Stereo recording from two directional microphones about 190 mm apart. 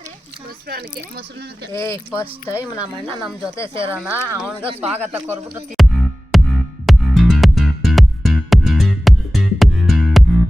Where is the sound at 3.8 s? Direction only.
10° right (ahead or behind).